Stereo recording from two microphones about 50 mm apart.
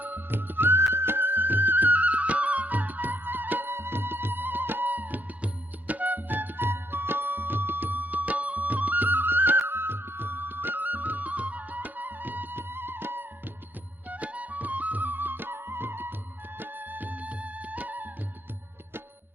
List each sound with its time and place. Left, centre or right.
0.0 s music: right
14.1 s music: right